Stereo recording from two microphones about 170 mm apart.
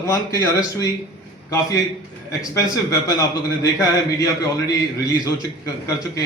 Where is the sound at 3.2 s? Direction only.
20° left (ahead or behind).